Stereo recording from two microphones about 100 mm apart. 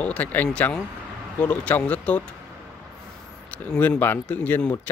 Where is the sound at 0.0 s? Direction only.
15° left (ahead or behind).